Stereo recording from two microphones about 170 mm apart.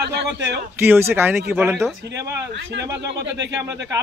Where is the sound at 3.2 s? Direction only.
90° right.